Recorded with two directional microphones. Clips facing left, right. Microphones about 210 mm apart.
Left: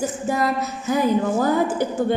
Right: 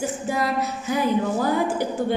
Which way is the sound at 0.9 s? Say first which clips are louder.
Left 3 dB; 45° left (ahead or behind).